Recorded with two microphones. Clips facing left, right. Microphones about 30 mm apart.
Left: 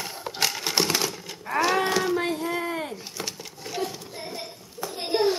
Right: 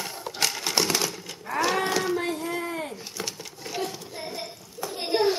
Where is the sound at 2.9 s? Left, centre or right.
Centre.